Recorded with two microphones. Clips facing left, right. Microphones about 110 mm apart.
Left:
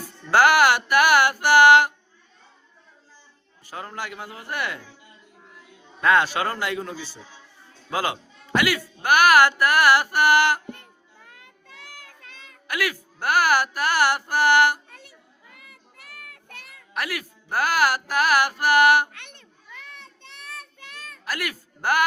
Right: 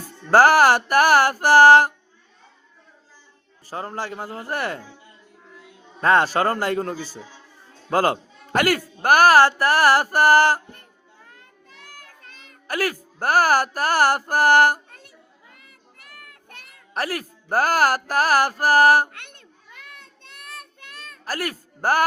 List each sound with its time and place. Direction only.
0.3 s a man's voice: 40° right (ahead or behind)
3.7 s a man's voice: 35° right (ahead or behind)
6.0 s a man's voice: 40° right (ahead or behind)
11.3 s a sound: 45° right (ahead or behind)
15.5 s child singing: 45° right (ahead or behind)
16.9 s a man's voice: 40° right (ahead or behind)
21.2 s speech: 35° right (ahead or behind)